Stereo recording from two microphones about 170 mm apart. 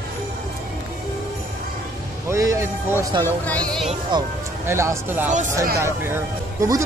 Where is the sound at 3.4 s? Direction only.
5° left (ahead or behind).